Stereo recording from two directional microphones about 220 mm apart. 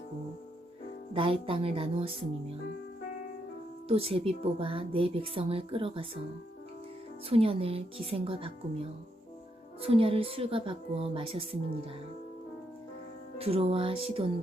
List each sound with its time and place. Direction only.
1.1 s speech: 25° right (ahead or behind)
3.8 s speech: 25° right (ahead or behind)
7.3 s speech: 25° right (ahead or behind)
13.4 s speech: 25° right (ahead or behind)